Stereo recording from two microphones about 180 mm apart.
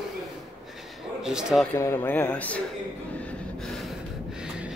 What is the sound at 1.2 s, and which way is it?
Speech, 5° right (ahead or behind).